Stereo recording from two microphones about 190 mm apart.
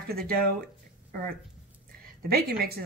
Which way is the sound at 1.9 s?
55° right (ahead or behind).